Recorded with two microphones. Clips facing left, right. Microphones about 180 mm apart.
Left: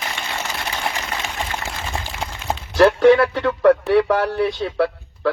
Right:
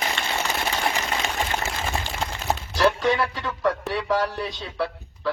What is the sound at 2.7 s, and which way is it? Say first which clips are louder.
Speech: left 10 dB; 60° left (ahead or behind).